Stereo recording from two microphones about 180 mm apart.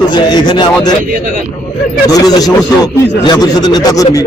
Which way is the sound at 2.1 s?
20° left (ahead or behind).